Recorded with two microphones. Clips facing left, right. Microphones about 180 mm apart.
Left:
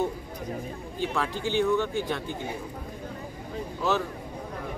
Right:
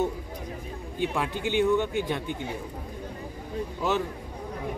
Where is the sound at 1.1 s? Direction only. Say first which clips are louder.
Left 1 dB; 15° right (ahead or behind).